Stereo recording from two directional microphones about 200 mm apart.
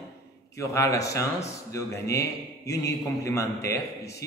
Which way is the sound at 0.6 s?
15° left (ahead or behind).